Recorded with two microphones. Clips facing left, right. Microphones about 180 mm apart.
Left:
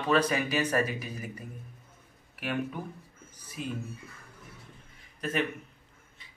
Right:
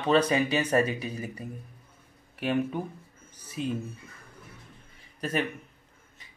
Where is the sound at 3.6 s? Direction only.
30° right (ahead or behind).